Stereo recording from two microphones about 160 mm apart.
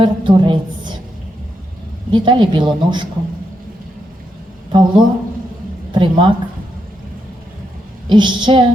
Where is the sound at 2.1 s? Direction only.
30° right (ahead or behind).